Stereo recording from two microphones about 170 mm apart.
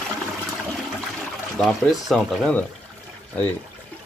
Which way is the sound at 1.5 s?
Centre (ahead or behind).